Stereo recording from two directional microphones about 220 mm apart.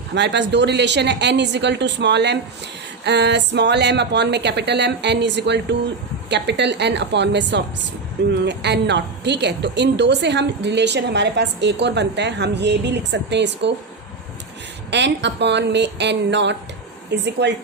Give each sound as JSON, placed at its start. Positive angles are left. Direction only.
{"t": 0.1, "sound": "a woman's voice", "side_deg": -50}
{"t": 14.8, "sound": "a woman's voice", "side_deg": -50}